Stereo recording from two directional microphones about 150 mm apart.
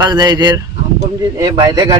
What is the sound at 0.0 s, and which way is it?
A man's voice, 30° right (ahead or behind).